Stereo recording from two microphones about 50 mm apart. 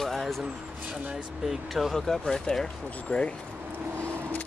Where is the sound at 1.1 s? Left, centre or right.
Centre.